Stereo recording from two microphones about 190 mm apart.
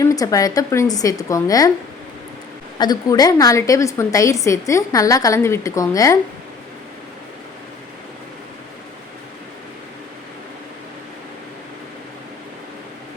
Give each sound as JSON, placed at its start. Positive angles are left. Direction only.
{"t": 0.0, "sound": "a woman's voice", "side_deg": 20}
{"t": 2.7, "sound": "a woman's voice", "side_deg": 20}